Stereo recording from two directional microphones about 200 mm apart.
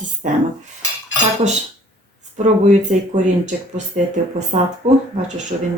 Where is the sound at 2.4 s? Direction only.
35° right (ahead or behind).